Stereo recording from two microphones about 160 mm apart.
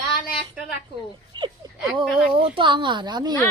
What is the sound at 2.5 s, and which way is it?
Speech, 30° right (ahead or behind).